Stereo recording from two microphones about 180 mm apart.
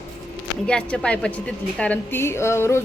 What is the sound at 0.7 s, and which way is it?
Speech, 5° left (ahead or behind).